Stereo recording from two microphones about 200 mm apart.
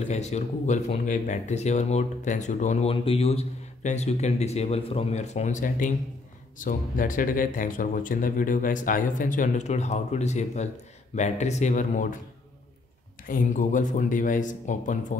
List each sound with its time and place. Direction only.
0.1 s speech: 35° left (ahead or behind)
13.3 s speech: 40° left (ahead or behind)